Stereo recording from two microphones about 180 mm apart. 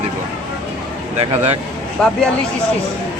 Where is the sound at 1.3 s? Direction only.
35° right (ahead or behind).